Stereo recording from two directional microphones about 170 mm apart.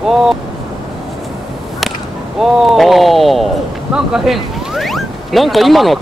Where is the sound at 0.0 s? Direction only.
Centre (ahead or behind).